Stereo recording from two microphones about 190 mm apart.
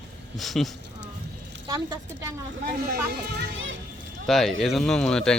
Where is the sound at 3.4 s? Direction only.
90° right.